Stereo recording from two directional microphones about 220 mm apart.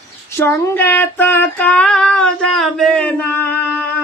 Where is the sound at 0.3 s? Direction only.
10° left (ahead or behind).